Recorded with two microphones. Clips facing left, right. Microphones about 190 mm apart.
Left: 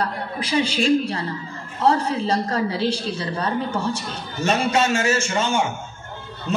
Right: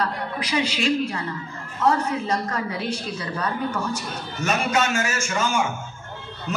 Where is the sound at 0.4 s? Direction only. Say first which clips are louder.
Left 4 dB; 30° left (ahead or behind).